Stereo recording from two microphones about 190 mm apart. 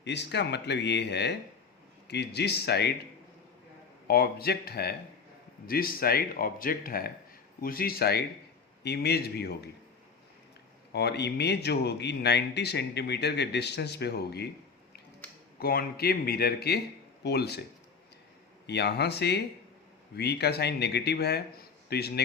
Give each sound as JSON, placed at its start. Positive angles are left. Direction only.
{"t": 0.0, "sound": "speech", "side_deg": 65}
{"t": 4.0, "sound": "speech", "side_deg": 55}
{"t": 10.9, "sound": "speech", "side_deg": 60}
{"t": 15.5, "sound": "speech", "side_deg": 55}
{"t": 18.6, "sound": "speech", "side_deg": 60}